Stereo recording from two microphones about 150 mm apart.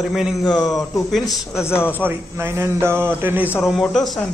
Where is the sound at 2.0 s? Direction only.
15° right (ahead or behind).